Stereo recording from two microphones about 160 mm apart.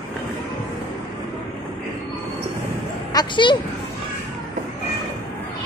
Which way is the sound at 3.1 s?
25° left (ahead or behind).